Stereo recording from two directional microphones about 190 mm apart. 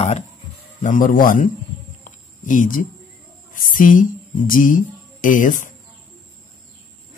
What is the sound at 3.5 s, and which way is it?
Music, 45° left (ahead or behind).